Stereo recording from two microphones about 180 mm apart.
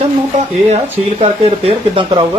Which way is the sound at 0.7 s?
35° right (ahead or behind).